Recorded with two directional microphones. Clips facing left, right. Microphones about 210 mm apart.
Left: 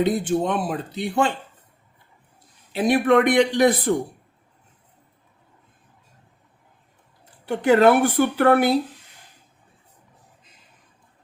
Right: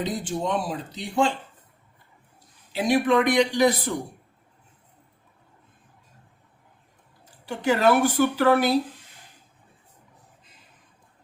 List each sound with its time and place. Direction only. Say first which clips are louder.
0.0 s speech: left 7 dB; 55° left (ahead or behind)
2.7 s speech: left 3 dB; 55° left (ahead or behind)
7.4 s speech: left 5 dB; 55° left (ahead or behind)